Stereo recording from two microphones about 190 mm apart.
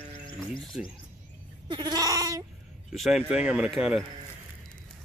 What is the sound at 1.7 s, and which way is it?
Goat, 25° right (ahead or behind).